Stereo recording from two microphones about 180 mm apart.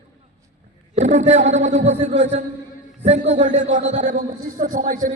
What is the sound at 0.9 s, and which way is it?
A man's voice, 40° right (ahead or behind).